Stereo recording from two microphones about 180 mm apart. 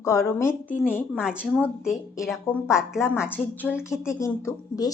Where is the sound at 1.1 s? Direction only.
5° right (ahead or behind).